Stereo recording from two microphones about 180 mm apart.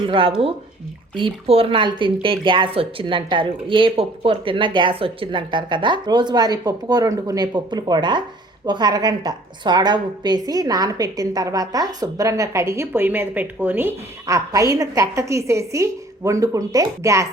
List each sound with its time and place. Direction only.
0.0 s a woman's voice: 30° right (ahead or behind)